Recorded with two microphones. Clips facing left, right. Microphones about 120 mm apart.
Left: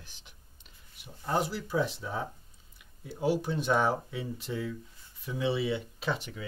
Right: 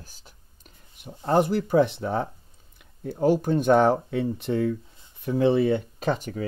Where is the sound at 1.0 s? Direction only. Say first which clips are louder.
Right 9 dB; 55° right (ahead or behind).